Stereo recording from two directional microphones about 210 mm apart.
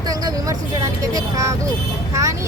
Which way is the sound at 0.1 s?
15° right (ahead or behind).